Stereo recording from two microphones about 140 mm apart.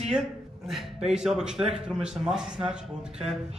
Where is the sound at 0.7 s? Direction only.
5° right (ahead or behind).